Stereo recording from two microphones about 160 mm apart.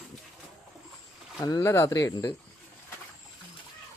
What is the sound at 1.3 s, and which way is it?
Speech, 20° left (ahead or behind).